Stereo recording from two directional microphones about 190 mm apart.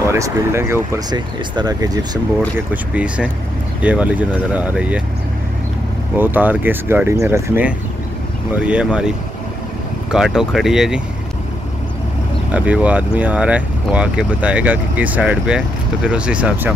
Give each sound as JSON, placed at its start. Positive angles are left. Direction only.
{"t": 0.1, "sound": "speech", "side_deg": -15}
{"t": 2.7, "sound": "speech", "side_deg": -5}
{"t": 6.1, "sound": "speech", "side_deg": -10}
{"t": 10.1, "sound": "speech", "side_deg": -5}
{"t": 12.5, "sound": "speech", "side_deg": -5}